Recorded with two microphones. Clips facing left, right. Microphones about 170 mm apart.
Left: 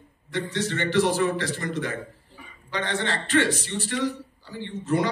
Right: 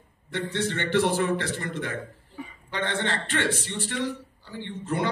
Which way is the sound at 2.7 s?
55° right (ahead or behind).